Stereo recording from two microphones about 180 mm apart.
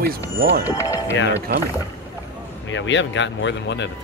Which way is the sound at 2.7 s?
90° left.